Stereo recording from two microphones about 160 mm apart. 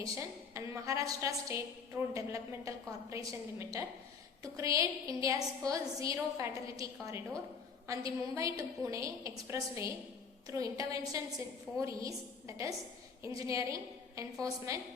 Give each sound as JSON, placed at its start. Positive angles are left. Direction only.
{"t": 0.0, "sound": "a woman's voice", "side_deg": -20}